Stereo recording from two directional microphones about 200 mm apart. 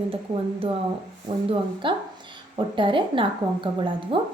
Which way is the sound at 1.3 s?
25° right (ahead or behind).